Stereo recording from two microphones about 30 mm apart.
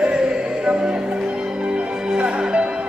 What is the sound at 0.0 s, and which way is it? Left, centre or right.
Music, right.